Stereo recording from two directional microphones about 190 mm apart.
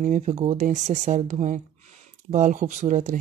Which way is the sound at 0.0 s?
40° right (ahead or behind).